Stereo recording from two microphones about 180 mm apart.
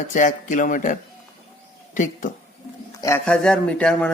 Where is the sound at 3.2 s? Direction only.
5° left (ahead or behind).